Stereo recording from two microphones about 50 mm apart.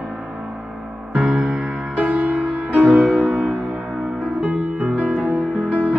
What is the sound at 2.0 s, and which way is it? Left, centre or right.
Music, centre.